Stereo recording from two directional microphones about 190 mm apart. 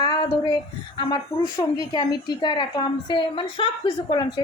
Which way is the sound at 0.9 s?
25° left (ahead or behind).